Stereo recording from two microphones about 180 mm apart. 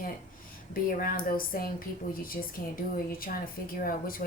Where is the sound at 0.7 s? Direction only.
50° left (ahead or behind).